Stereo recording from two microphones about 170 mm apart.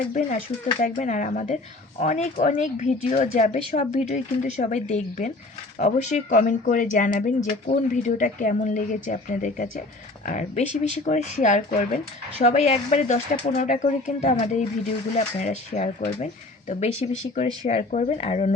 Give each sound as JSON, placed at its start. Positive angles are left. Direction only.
{"t": 0.1, "sound": "speech", "side_deg": 45}